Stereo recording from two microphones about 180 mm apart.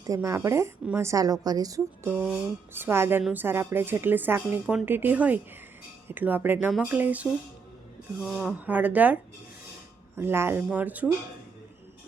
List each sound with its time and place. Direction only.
0.1 s a woman's voice: 15° right (ahead or behind)
2.0 s a woman's voice: 5° right (ahead or behind)
10.2 s a woman's voice: 15° right (ahead or behind)